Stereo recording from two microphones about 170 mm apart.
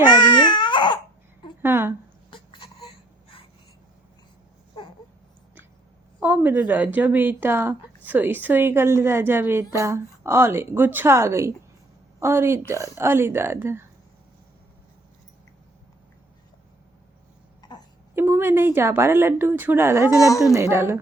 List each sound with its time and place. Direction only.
0.1 s baby cry: 25° left (ahead or behind)
1.6 s a sound: 15° right (ahead or behind)
2.3 s baby cry: 30° left (ahead or behind)
6.1 s a woman's voice: 10° right (ahead or behind)
17.6 s a sound: 25° left (ahead or behind)
18.1 s a woman's voice: 15° right (ahead or behind)
20.1 s a woman's voice: 20° left (ahead or behind)
20.5 s a woman's voice: 15° right (ahead or behind)